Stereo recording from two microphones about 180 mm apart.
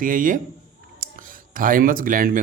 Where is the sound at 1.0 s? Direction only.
50° right (ahead or behind).